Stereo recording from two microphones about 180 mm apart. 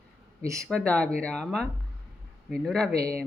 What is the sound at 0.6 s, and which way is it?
Speech, 5° left (ahead or behind).